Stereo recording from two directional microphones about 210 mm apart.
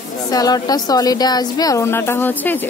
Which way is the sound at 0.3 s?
15° left (ahead or behind).